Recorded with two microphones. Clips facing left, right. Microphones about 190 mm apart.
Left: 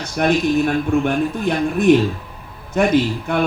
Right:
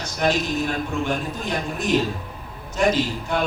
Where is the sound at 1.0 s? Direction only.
55° left (ahead or behind).